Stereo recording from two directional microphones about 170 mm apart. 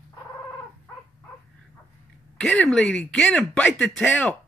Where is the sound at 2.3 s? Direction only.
5° left (ahead or behind).